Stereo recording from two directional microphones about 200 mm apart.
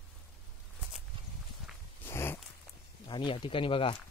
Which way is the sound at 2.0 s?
10° left (ahead or behind).